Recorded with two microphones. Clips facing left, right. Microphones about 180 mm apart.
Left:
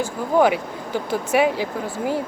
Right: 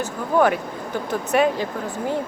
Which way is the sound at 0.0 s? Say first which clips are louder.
Left 1 dB; 10° left (ahead or behind).